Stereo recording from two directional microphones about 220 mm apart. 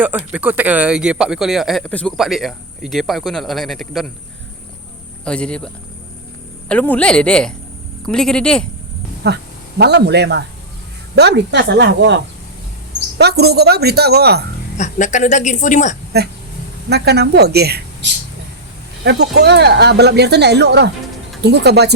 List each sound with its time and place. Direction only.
0.0 s speech: 5° right (ahead or behind)
5.2 s speech: 5° left (ahead or behind)
9.2 s speech: 50° right (ahead or behind)
14.8 s a woman's voice: 35° left (ahead or behind)
16.9 s speech: 50° right (ahead or behind)